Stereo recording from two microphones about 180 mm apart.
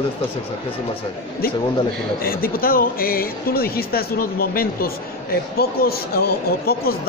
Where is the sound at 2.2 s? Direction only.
55° left (ahead or behind).